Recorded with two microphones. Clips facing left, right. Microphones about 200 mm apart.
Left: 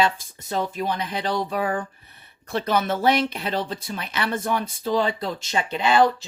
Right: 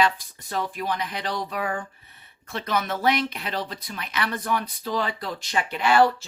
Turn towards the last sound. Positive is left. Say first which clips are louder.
# left 1 dB
turn(degrees=20)  # may be behind; listen again after turning